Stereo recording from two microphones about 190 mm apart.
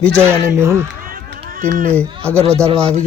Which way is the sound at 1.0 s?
50° right (ahead or behind).